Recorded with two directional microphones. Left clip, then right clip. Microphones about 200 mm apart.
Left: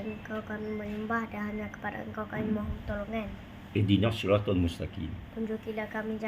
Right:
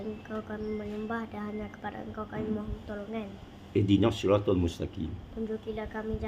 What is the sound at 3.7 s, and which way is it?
Speech, 25° right (ahead or behind).